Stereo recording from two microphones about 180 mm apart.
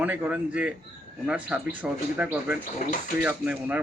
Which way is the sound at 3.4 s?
10° right (ahead or behind).